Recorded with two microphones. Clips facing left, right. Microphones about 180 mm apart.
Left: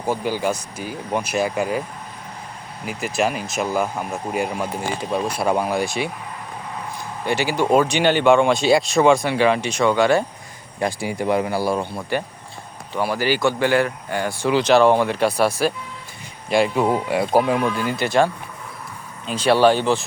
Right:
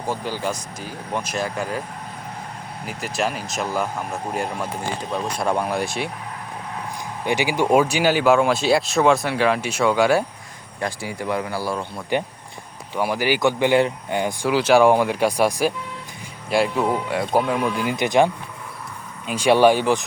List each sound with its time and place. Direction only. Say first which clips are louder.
0.1 s speech: left 4 dB; 10° left (ahead or behind)
2.8 s speech: left 3 dB; 5° left (ahead or behind)
7.3 s speech: even; 15° right (ahead or behind)
10.8 s speech: left 4 dB; 15° left (ahead or behind)
12.1 s speech: right 3 dB; 20° right (ahead or behind)
16.5 s speech: left 2 dB; centre (ahead or behind)
17.7 s speech: even; 10° right (ahead or behind)
19.3 s speech: even; 15° right (ahead or behind)